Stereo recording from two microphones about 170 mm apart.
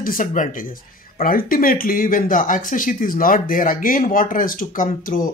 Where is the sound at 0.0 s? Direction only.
55° left (ahead or behind).